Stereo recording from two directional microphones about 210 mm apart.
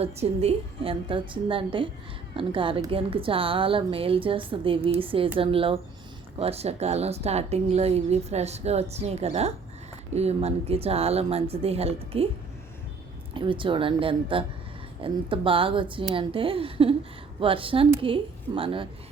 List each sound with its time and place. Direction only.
0.0 s a woman's voice: 30° right (ahead or behind)
13.3 s a woman's voice: 25° right (ahead or behind)